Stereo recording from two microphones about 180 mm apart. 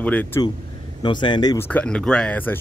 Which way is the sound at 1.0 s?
25° left (ahead or behind).